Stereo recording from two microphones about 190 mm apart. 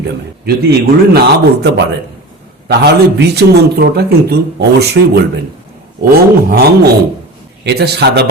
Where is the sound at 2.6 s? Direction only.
60° right (ahead or behind).